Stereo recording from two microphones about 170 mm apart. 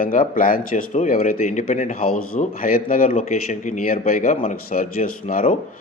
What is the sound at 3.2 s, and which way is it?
Speech, 45° left (ahead or behind).